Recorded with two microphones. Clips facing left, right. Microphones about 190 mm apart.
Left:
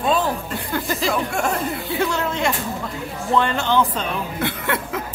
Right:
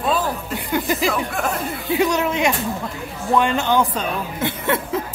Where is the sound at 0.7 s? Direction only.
15° right (ahead or behind).